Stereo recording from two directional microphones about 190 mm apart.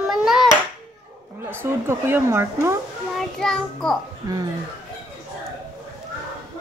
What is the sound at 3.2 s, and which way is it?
Speech, 5° left (ahead or behind).